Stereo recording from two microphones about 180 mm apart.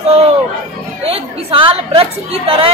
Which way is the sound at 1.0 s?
30° right (ahead or behind).